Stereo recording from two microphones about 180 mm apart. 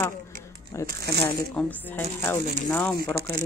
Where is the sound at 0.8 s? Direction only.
65° right (ahead or behind).